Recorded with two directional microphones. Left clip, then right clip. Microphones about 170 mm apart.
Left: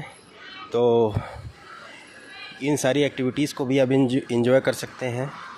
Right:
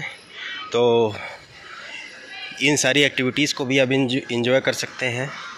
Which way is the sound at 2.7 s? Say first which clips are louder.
Right 2 dB; 10° left (ahead or behind).